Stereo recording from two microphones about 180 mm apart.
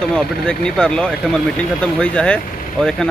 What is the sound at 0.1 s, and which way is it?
Speech, 5° left (ahead or behind).